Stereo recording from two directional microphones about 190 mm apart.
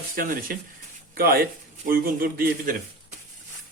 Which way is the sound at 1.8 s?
50° right (ahead or behind).